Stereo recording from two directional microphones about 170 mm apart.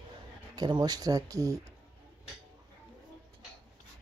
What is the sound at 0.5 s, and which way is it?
Speech, 25° right (ahead or behind).